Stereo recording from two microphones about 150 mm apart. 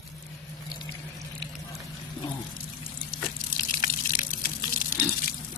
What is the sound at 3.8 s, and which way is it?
Water, 70° left (ahead or behind).